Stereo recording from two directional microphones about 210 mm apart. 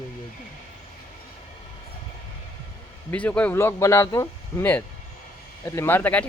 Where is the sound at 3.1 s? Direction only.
5° left (ahead or behind).